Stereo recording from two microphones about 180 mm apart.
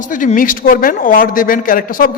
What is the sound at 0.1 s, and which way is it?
A man's voice, 50° left (ahead or behind).